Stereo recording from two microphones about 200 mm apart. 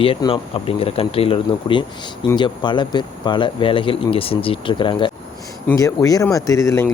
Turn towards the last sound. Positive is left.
turn(degrees=15)  # may be behind; listen again after turning